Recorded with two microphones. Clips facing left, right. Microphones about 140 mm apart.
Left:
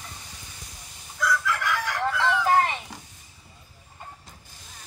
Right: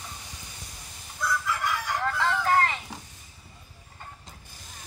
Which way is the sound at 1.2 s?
90° left.